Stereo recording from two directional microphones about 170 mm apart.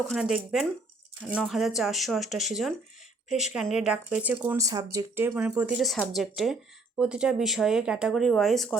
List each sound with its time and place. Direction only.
0.1 s speech: centre (ahead or behind)